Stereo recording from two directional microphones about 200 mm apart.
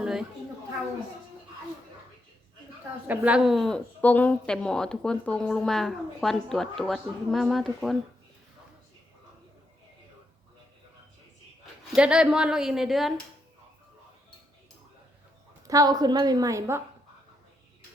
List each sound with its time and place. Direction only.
0.0 s a sound: 5° right (ahead or behind)
3.1 s speech: 5° right (ahead or behind)
11.9 s speech: 5° right (ahead or behind)
15.6 s a woman's voice: 15° right (ahead or behind)